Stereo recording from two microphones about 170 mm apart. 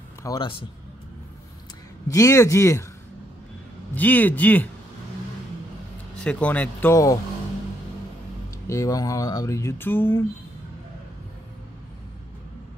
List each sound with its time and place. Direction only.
0.2 s a man's voice: 25° left (ahead or behind)
2.0 s speech: 20° left (ahead or behind)
3.9 s speech: 10° left (ahead or behind)
6.2 s speech: 10° left (ahead or behind)
8.6 s speech: 20° left (ahead or behind)